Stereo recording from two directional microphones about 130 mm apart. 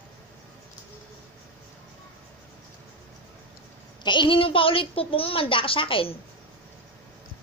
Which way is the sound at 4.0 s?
35° left (ahead or behind).